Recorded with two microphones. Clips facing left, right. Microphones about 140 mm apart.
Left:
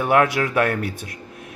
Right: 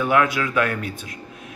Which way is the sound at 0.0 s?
50° left (ahead or behind).